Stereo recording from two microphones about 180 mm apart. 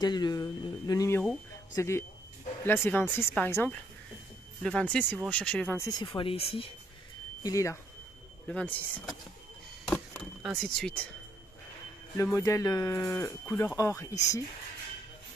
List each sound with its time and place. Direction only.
0.0 s speech: 25° left (ahead or behind)
1.8 s cattle: 15° left (ahead or behind)
5.9 s speech: 25° left (ahead or behind)
7.4 s cattle: 15° left (ahead or behind)
9.8 s a sound: 5° left (ahead or behind)
12.2 s cattle: 15° left (ahead or behind)